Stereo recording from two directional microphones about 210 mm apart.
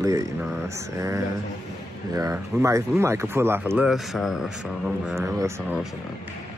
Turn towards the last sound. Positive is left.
turn(degrees=-10)  # may be behind; listen again after turning